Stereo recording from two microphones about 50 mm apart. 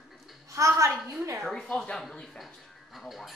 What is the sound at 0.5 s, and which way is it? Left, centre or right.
Speech, right.